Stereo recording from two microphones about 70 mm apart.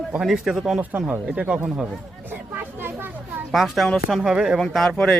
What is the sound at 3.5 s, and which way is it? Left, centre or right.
A man's voice, centre.